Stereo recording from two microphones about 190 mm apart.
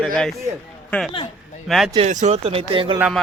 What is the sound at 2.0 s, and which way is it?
A man's voice, 40° right (ahead or behind).